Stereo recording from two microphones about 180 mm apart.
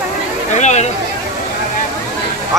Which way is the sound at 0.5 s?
40° left (ahead or behind).